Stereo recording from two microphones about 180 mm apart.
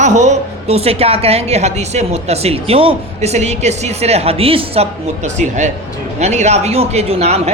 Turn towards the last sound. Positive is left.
turn(degrees=-35)  # may be behind; listen again after turning